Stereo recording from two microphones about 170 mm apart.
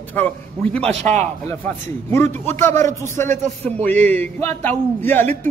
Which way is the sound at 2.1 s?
15° left (ahead or behind).